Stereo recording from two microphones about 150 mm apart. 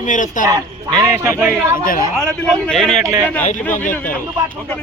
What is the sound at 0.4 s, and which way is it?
A man's voice, 25° right (ahead or behind).